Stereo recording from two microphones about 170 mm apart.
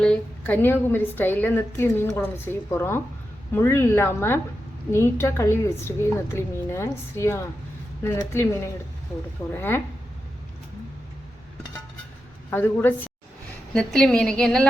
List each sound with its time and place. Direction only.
0.0 s a woman's voice: 5° left (ahead or behind)
12.5 s a woman's voice: 10° left (ahead or behind)